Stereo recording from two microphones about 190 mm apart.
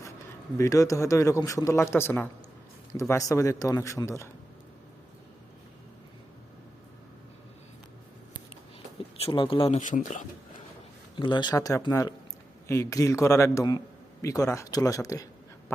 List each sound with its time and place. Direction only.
0.6 s a man's voice: 15° left (ahead or behind)
9.1 s speech: 30° left (ahead or behind)
9.8 s speech: 45° left (ahead or behind)
11.2 s a man's voice: 25° left (ahead or behind)